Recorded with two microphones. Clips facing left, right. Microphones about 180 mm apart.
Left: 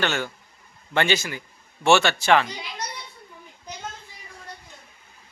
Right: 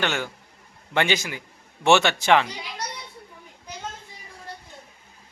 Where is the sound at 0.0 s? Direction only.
15° right (ahead or behind).